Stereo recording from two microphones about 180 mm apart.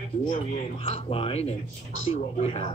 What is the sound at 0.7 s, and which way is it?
Speech, 35° left (ahead or behind).